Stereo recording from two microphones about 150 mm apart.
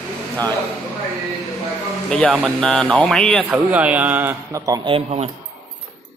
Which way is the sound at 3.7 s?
10° right (ahead or behind).